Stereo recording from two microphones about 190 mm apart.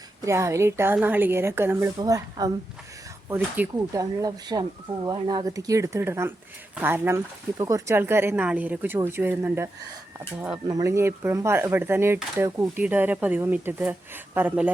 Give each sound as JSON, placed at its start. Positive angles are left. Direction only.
{"t": 0.2, "sound": "speech", "side_deg": -15}
{"t": 10.7, "sound": "speech", "side_deg": -15}